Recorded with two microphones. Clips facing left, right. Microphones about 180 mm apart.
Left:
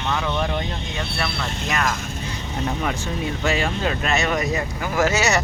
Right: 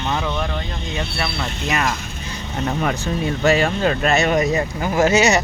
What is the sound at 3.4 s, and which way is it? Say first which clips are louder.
Speech: right 6 dB; 45° right (ahead or behind).